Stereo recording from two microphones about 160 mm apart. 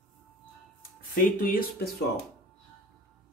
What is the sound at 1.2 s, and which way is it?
Speech, 60° left (ahead or behind).